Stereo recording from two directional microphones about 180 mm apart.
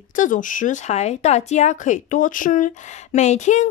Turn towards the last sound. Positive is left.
turn(degrees=40)  # may be behind; listen again after turning